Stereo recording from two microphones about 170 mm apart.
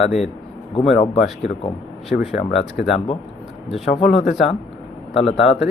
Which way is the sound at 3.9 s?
40° left (ahead or behind).